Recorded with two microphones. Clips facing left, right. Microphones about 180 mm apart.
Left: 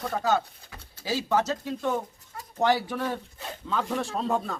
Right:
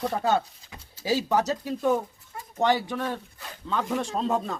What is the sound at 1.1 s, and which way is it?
Speech, 15° right (ahead or behind).